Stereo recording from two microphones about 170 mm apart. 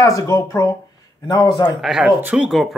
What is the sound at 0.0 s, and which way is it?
Speech, 20° left (ahead or behind).